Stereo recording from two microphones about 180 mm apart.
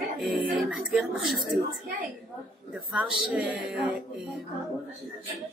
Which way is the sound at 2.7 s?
5° right (ahead or behind).